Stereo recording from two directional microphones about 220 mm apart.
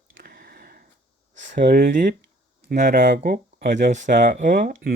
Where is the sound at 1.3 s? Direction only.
40° right (ahead or behind).